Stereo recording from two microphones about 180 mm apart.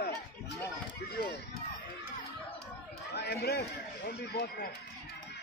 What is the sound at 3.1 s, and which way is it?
Speech, 65° left (ahead or behind).